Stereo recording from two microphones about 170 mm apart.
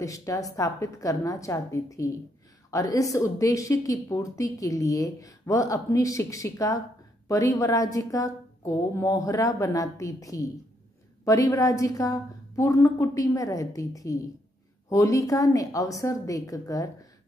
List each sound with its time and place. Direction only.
0.0 s a woman's voice: 20° left (ahead or behind)